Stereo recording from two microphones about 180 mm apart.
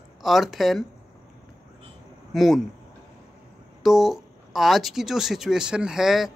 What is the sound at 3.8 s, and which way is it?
Speech, centre (ahead or behind).